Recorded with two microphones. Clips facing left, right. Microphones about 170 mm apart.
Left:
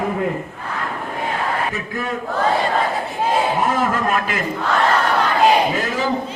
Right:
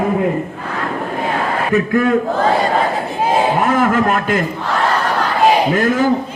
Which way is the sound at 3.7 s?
55° right (ahead or behind).